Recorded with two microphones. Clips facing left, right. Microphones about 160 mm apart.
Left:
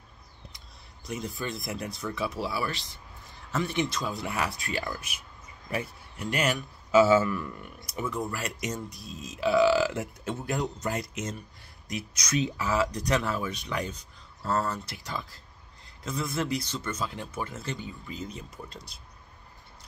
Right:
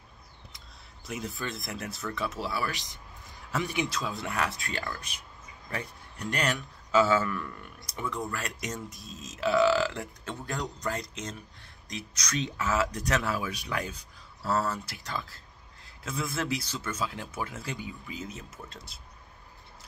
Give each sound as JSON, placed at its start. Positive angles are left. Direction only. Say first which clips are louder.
{"t": 1.0, "sound": "speech", "louder": "left 2 dB", "side_deg": -5}
{"t": 2.7, "sound": "a man's voice", "louder": "left 1 dB", "side_deg": -15}